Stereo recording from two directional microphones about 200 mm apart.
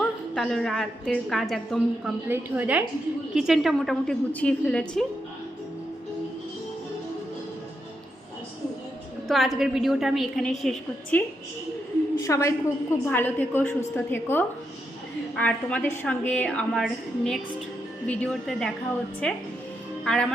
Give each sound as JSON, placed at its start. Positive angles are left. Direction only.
{"t": 0.3, "sound": "a woman's voice", "side_deg": 0}
{"t": 2.2, "sound": "a woman's voice", "side_deg": -10}
{"t": 9.2, "sound": "a woman's voice", "side_deg": 0}
{"t": 12.2, "sound": "a woman's voice", "side_deg": 15}